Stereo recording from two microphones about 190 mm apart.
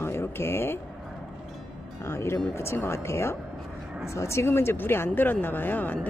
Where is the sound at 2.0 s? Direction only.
15° left (ahead or behind).